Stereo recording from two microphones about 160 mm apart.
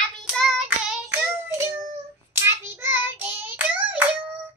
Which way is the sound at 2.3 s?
15° right (ahead or behind).